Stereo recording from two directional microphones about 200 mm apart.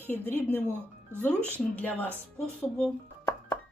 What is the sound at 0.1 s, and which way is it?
Speech, 10° left (ahead or behind).